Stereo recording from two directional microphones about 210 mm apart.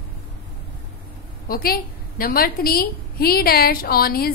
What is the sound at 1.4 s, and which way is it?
A woman's voice, 45° left (ahead or behind).